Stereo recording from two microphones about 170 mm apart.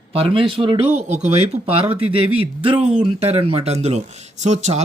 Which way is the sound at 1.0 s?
45° right (ahead or behind).